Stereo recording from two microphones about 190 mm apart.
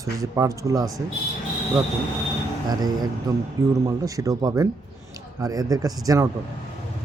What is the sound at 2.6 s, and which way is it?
Speech, 20° right (ahead or behind).